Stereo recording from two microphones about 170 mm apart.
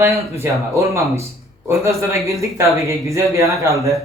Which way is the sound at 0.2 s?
15° right (ahead or behind).